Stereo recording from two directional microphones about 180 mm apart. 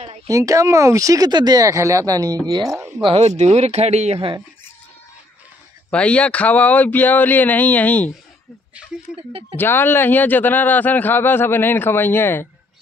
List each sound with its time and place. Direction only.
0.3 s speech: 20° right (ahead or behind)
3.1 s speech: 35° right (ahead or behind)
5.9 s a man's voice: 5° left (ahead or behind)
9.1 s speech: centre (ahead or behind)
9.6 s a man's voice: 10° left (ahead or behind)